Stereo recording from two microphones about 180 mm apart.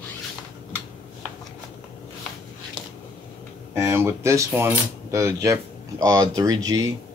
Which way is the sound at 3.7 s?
15° right (ahead or behind).